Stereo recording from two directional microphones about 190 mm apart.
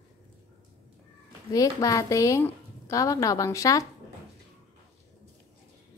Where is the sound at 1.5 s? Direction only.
20° left (ahead or behind).